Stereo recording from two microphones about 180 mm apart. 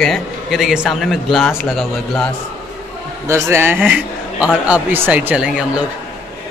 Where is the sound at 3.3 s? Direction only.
15° right (ahead or behind).